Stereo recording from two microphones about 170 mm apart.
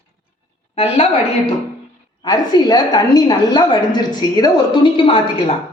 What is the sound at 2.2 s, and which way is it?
A woman's voice, 25° left (ahead or behind).